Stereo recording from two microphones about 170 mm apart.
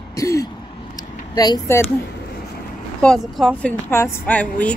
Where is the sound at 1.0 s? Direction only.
20° left (ahead or behind).